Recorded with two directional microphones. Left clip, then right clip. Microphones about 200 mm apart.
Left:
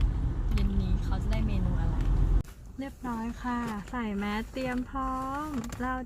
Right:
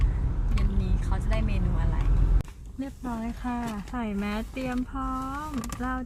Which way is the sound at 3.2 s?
25° left (ahead or behind).